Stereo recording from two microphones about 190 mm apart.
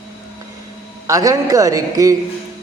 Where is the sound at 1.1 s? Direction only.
20° right (ahead or behind).